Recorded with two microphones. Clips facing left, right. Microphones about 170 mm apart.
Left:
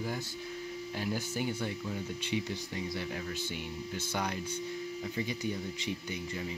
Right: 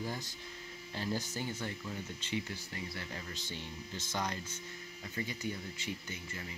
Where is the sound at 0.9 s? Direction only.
10° left (ahead or behind).